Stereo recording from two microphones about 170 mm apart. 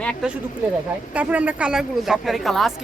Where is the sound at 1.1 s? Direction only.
10° right (ahead or behind).